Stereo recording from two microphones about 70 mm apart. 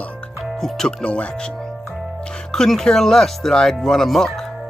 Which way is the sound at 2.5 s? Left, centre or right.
Centre.